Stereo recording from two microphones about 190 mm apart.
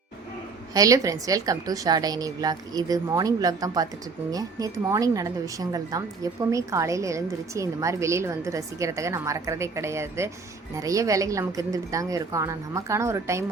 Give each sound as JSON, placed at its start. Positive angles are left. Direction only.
{"t": 0.7, "sound": "a woman's voice", "side_deg": -20}